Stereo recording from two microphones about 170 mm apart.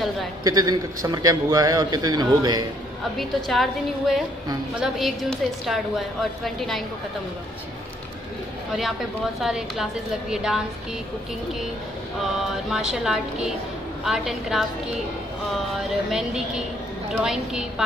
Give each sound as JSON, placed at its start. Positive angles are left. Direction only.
{"t": 0.4, "sound": "a man's voice", "side_deg": -20}
{"t": 3.2, "sound": "a woman's voice", "side_deg": 0}
{"t": 9.4, "sound": "a woman's voice", "side_deg": 0}
{"t": 12.2, "sound": "a woman's voice", "side_deg": 0}
{"t": 16.1, "sound": "a woman's voice", "side_deg": -5}